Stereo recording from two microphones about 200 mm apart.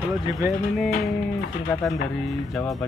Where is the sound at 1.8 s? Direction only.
Centre (ahead or behind).